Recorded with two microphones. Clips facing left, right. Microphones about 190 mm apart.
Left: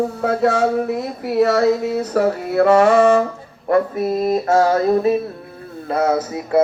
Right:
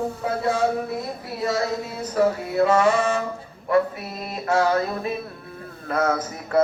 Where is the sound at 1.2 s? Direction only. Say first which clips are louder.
Left 12 dB; 70° left (ahead or behind).